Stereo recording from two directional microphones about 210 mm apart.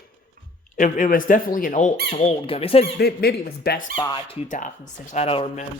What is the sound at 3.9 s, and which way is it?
Speech, 25° left (ahead or behind).